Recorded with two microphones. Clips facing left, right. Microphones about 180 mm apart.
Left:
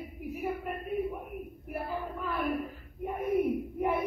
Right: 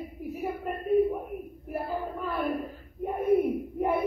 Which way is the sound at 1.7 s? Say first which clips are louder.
Right 3 dB; 40° right (ahead or behind).